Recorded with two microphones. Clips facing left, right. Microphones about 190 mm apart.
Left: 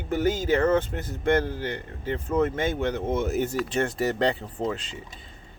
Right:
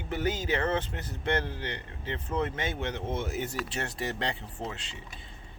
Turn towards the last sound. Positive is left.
turn(degrees=40)  # may be behind; listen again after turning